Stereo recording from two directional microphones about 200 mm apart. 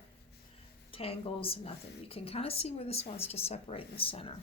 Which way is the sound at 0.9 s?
30° left (ahead or behind).